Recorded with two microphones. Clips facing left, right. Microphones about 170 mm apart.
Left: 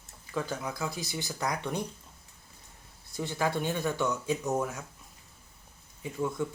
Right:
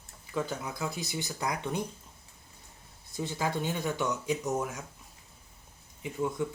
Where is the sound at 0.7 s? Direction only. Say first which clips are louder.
Even; 20° right (ahead or behind).